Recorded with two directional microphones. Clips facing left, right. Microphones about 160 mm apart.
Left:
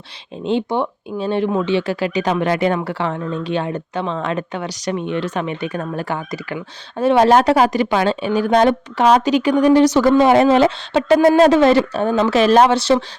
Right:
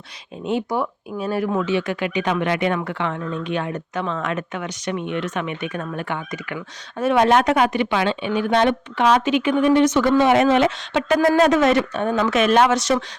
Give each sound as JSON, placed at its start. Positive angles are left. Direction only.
{"t": 0.4, "sound": "speech", "side_deg": 25}